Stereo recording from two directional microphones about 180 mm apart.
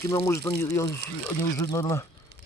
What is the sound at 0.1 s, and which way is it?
Speech, 15° left (ahead or behind).